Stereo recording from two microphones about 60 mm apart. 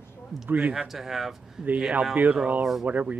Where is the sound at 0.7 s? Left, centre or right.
Centre.